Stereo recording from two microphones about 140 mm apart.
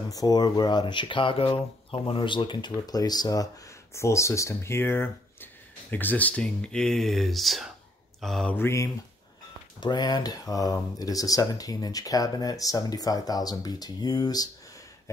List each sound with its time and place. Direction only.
0.1 s speech: 25° left (ahead or behind); by 7.7 s centre (ahead or behind)
8.2 s mantra: centre (ahead or behind)
8.5 s speech: 20° left (ahead or behind)
9.8 s speech: 30° left (ahead or behind)